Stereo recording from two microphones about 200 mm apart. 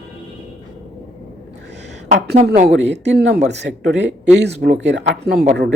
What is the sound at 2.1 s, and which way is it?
Speech, 55° right (ahead or behind).